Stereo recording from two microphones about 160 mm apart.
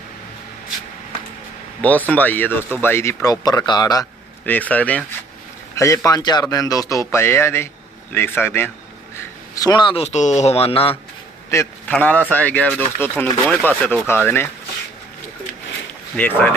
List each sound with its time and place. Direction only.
1.8 s speech: 10° left (ahead or behind); by 4.0 s 25° left (ahead or behind)
4.4 s speech: 10° left (ahead or behind)
5.7 s a man's voice: 20° left (ahead or behind); by 10.9 s 35° left (ahead or behind)
11.5 s speech: 15° left (ahead or behind)
16.1 s speech: 10° left (ahead or behind)